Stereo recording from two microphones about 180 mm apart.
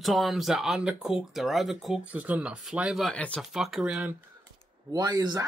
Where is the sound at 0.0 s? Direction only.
Centre (ahead or behind).